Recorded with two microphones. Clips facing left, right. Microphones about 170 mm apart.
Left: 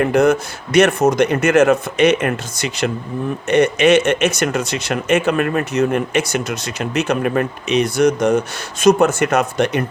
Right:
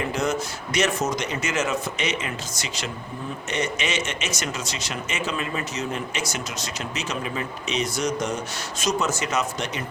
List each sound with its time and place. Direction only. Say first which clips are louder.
0.0 s speech: left 11 dB; 60° left (ahead or behind)